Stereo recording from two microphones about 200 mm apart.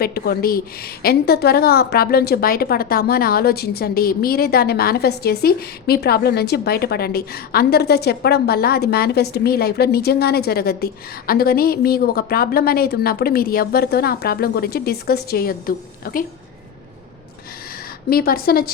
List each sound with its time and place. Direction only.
0.0 s a woman's voice: 50° left (ahead or behind)
18.1 s a woman's voice: 50° left (ahead or behind)